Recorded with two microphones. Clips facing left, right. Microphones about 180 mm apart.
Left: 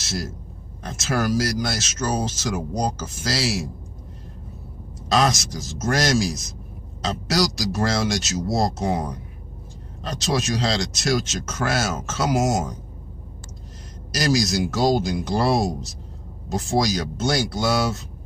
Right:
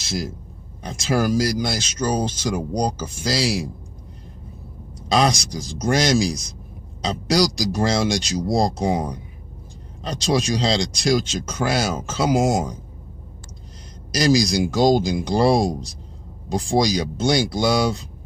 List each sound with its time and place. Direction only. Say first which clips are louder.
0.0 s a man's voice: right 3 dB; centre (ahead or behind)
5.1 s speech: right 1 dB; centre (ahead or behind)
10.3 s speech: right 3 dB; 5° left (ahead or behind)
14.1 s speech: right 3 dB; 5° left (ahead or behind)